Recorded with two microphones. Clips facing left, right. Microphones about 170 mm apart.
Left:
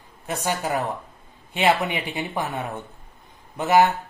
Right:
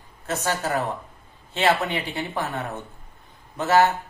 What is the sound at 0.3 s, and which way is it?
A man's voice, 15° left (ahead or behind).